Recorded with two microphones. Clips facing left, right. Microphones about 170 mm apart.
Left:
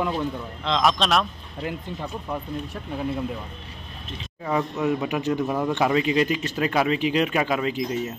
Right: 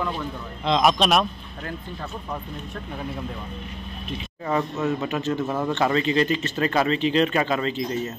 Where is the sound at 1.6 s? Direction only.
15° left (ahead or behind).